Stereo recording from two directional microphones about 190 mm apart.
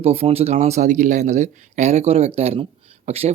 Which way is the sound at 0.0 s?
35° right (ahead or behind).